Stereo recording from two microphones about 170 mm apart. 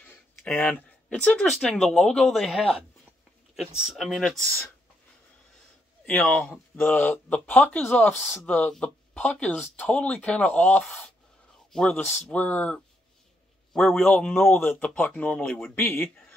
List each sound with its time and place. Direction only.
0.0 s speech: 10° left (ahead or behind)
6.0 s speech: 5° left (ahead or behind)